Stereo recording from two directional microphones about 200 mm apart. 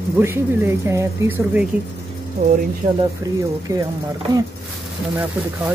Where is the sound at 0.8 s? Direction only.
15° right (ahead or behind).